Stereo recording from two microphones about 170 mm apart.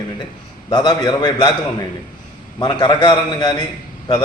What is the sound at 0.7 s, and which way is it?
Speech, 25° left (ahead or behind).